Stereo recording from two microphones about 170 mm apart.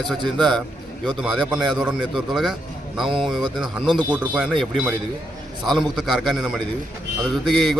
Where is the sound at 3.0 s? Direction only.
30° right (ahead or behind).